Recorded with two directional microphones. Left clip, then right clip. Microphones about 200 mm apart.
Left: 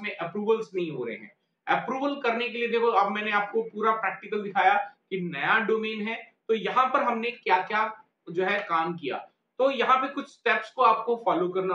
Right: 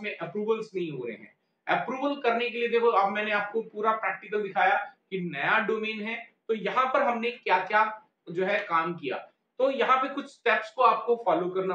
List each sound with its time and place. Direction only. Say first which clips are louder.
0.0 s a man's voice: left 2 dB; 15° left (ahead or behind)